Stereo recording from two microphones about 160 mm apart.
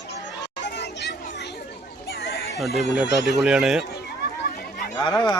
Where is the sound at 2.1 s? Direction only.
85° left.